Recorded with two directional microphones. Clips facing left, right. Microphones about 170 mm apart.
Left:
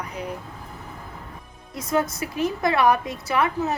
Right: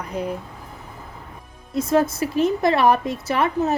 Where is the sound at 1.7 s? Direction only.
30° right (ahead or behind).